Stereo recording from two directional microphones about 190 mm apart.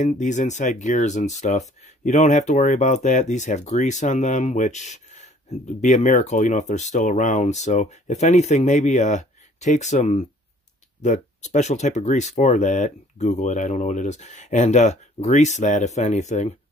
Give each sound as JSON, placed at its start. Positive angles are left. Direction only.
{"t": 0.0, "sound": "speech", "side_deg": 40}